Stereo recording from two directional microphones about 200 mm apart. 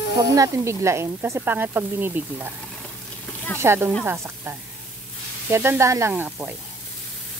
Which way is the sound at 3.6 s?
10° right (ahead or behind).